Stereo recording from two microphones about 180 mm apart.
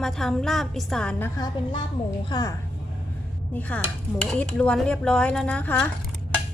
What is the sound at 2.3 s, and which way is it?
Speech, 20° left (ahead or behind).